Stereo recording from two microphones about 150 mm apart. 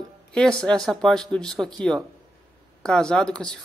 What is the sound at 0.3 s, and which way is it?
Speech, 5° left (ahead or behind).